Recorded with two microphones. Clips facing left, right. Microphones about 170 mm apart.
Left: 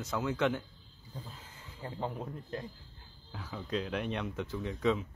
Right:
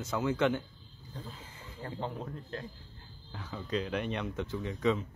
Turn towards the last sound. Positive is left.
turn(degrees=0)  # may be behind; listen again after turning